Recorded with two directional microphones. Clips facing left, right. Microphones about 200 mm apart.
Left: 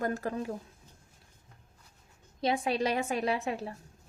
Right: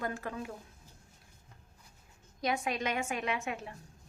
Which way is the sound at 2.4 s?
30° left (ahead or behind).